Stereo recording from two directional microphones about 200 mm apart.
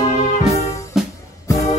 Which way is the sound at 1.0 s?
Centre (ahead or behind).